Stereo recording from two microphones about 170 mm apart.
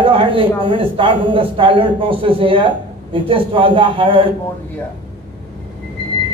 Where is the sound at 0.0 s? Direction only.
30° right (ahead or behind).